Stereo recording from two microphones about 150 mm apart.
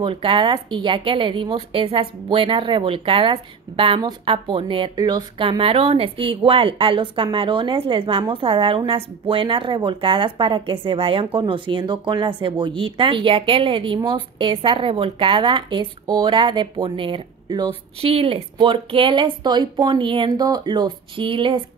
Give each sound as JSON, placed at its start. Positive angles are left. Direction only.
{"t": 0.0, "sound": "a woman's voice", "side_deg": -35}